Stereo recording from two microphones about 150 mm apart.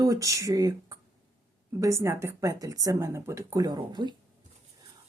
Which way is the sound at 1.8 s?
20° right (ahead or behind).